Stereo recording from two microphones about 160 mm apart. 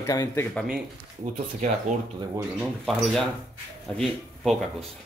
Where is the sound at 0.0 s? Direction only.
20° left (ahead or behind).